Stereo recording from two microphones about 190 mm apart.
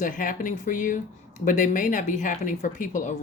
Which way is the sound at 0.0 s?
45° left (ahead or behind).